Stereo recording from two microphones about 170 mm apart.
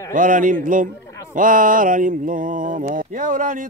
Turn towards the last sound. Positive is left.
turn(degrees=-50)  # may be behind; listen again after turning